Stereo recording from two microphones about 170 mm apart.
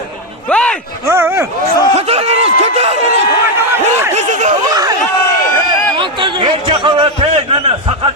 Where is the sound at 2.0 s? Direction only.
35° right (ahead or behind).